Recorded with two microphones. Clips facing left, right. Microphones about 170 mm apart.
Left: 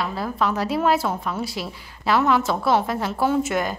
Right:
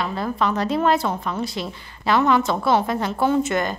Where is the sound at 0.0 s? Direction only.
5° left (ahead or behind).